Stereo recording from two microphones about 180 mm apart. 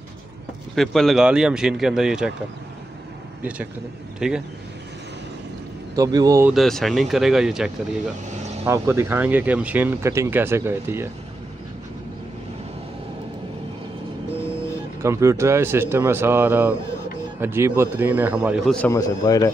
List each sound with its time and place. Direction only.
0.7 s speech: centre (ahead or behind)
4.2 s speech: 5° right (ahead or behind)
5.9 s speech: 20° right (ahead or behind)
6.4 s speech: centre (ahead or behind)
8.6 s speech: 15° right (ahead or behind)
15.0 s speech: 15° right (ahead or behind); by 18.9 s centre (ahead or behind)
18.9 s speech: 20° left (ahead or behind)